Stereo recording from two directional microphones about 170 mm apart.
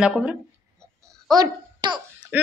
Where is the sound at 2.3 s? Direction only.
10° right (ahead or behind).